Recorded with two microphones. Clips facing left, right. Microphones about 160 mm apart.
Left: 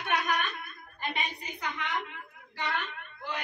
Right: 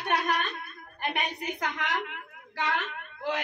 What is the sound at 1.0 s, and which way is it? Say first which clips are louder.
A woman's voice: right 4 dB; 60° right (ahead or behind).